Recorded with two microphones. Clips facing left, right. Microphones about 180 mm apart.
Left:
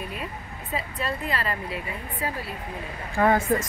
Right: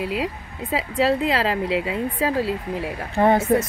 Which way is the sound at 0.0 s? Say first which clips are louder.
Right 9 dB; 90° right.